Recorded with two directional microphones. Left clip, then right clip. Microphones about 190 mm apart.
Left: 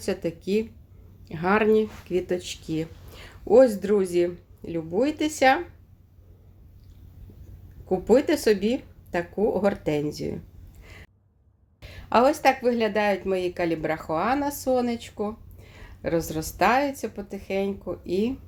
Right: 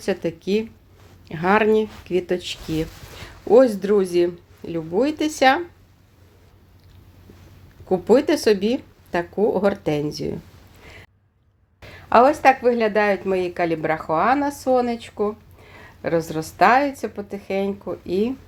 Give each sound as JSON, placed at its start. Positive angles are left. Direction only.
{"t": 0.0, "sound": "speech", "side_deg": -30}
{"t": 7.9, "sound": "speech", "side_deg": -25}
{"t": 10.8, "sound": "a sound", "side_deg": -30}
{"t": 11.8, "sound": "speech", "side_deg": -25}